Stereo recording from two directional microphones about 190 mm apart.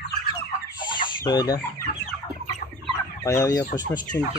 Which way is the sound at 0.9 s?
20° left (ahead or behind).